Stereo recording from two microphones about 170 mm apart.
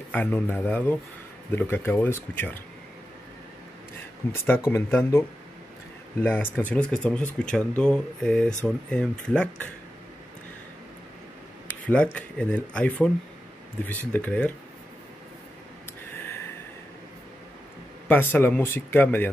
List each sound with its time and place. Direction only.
0.1 s speech: 10° left (ahead or behind)
4.2 s speech: 10° left (ahead or behind)
6.2 s speech: 10° left (ahead or behind)
11.6 s speech: 5° left (ahead or behind)
16.2 s a sound: 15° left (ahead or behind)
18.0 s speech: 10° left (ahead or behind)